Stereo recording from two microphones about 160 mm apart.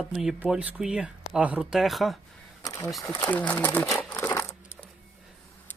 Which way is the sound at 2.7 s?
20° left (ahead or behind).